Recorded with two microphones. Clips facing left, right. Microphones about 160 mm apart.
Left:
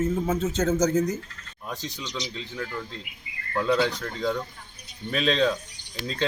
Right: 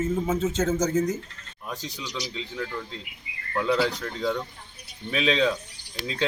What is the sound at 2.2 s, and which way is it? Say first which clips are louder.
Speech: even; 20° left (ahead or behind).